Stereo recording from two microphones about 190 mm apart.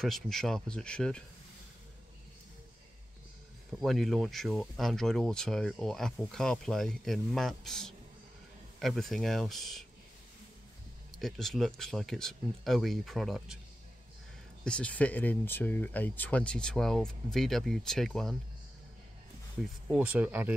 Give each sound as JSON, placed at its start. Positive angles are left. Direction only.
{"t": 0.0, "sound": "speech", "side_deg": 0}
{"t": 3.8, "sound": "speech", "side_deg": 0}
{"t": 11.1, "sound": "speech", "side_deg": 0}
{"t": 14.6, "sound": "speech", "side_deg": 5}
{"t": 19.9, "sound": "speech", "side_deg": -5}